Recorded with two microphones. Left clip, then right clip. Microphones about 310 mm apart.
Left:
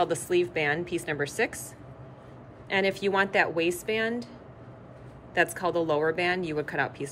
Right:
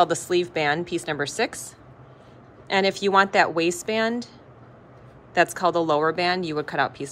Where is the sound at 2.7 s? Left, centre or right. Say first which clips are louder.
Right 5 dB; centre.